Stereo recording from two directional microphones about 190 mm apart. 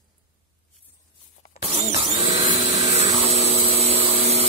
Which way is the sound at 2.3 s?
35° right (ahead or behind).